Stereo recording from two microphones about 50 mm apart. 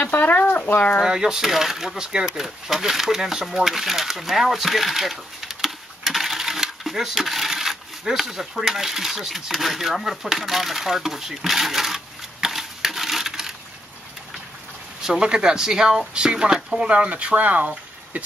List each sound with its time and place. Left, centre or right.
0.0 s speech: left
0.7 s speech: left
1.0 s speech: centre
15.0 s speech: centre; by 17.6 s right